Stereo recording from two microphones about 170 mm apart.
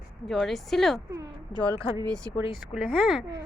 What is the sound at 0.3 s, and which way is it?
Speech, centre (ahead or behind).